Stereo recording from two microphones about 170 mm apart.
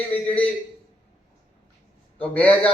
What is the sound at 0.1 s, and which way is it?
Speech, 10° left (ahead or behind).